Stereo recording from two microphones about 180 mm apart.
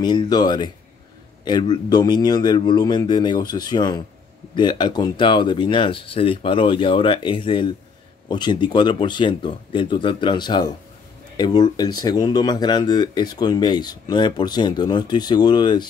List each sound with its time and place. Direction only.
0.0 s speech: 25° left (ahead or behind)